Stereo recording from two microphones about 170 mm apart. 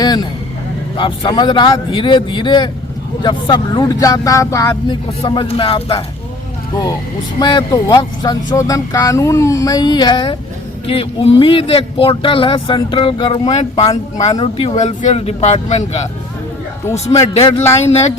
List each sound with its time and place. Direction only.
0.0 s vehicle: 25° left (ahead or behind)
0.9 s speech: 30° left (ahead or behind)
7.3 s speech: 25° left (ahead or behind); by 16.0 s 40° left (ahead or behind)
16.8 s a man's voice: 15° left (ahead or behind)
17.2 s speech: 35° left (ahead or behind)